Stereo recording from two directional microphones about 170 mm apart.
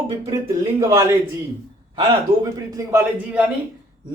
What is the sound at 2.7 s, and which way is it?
Speech, 15° right (ahead or behind).